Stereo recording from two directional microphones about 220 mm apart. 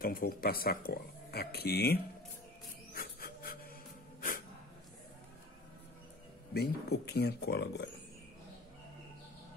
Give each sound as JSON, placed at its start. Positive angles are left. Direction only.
{"t": 0.0, "sound": "speech", "side_deg": 40}
{"t": 2.9, "sound": "music", "side_deg": 40}
{"t": 6.5, "sound": "speech", "side_deg": 45}